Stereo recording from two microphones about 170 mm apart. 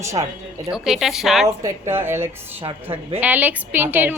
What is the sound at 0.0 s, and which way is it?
Speech, 15° right (ahead or behind).